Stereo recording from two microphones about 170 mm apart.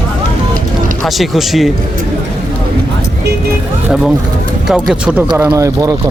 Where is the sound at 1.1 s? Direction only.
Centre (ahead or behind).